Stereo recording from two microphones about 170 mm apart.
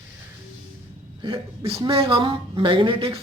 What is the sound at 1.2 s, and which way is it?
A woman's voice, 30° right (ahead or behind).